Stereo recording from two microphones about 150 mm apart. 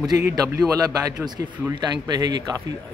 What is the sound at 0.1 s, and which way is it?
A man's voice, 20° right (ahead or behind).